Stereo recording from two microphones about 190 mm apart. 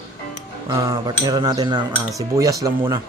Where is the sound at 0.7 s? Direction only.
20° right (ahead or behind).